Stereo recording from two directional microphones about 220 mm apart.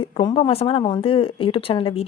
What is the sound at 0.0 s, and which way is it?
A woman's voice, 20° left (ahead or behind).